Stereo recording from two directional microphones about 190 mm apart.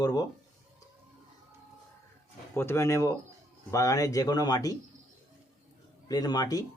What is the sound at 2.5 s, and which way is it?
Speech, 15° left (ahead or behind).